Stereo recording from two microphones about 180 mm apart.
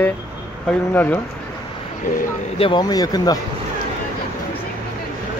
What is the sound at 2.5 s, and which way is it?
Speech, 25° left (ahead or behind).